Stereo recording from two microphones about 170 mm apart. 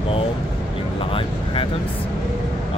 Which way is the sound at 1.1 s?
30° left (ahead or behind).